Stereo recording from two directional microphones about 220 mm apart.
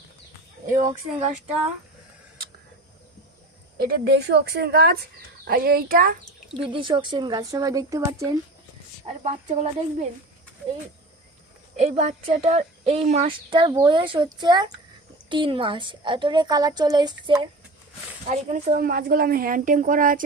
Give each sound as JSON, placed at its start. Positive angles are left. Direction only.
{"t": 3.8, "sound": "a woman's voice", "side_deg": -45}
{"t": 6.5, "sound": "speech", "side_deg": -25}
{"t": 9.0, "sound": "speech", "side_deg": -30}
{"t": 11.8, "sound": "speech", "side_deg": -30}
{"t": 18.3, "sound": "speech", "side_deg": -35}